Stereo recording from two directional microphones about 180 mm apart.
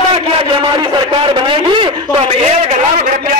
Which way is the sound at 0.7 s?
25° right (ahead or behind).